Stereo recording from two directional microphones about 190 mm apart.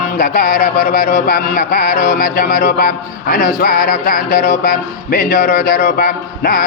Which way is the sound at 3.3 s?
55° left (ahead or behind).